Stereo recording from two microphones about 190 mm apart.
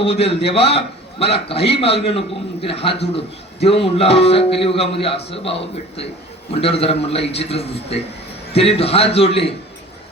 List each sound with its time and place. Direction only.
0.0 s a man's voice: 30° left (ahead or behind)